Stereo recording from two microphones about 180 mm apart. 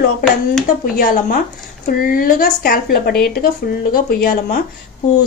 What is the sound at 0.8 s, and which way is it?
A woman's voice, 50° left (ahead or behind).